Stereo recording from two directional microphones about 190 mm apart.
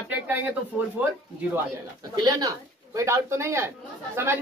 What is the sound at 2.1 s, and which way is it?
Speech, 20° right (ahead or behind).